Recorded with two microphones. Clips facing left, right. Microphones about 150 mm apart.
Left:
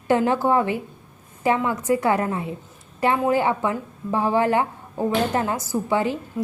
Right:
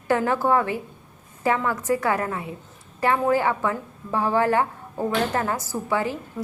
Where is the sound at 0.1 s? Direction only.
20° left (ahead or behind).